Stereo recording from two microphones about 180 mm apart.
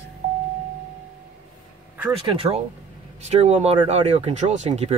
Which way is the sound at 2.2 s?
30° right (ahead or behind).